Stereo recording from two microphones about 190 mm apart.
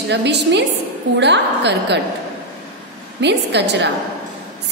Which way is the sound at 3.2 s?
65° right (ahead or behind).